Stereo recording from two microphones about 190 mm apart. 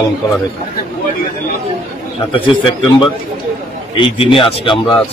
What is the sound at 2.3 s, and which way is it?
Speech, 25° left (ahead or behind).